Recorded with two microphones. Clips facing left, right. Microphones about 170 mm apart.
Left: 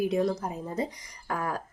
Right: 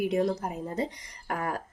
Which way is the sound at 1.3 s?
55° right (ahead or behind).